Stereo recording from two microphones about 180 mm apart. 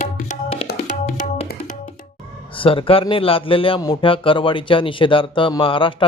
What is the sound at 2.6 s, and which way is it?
A man's voice, 30° left (ahead or behind).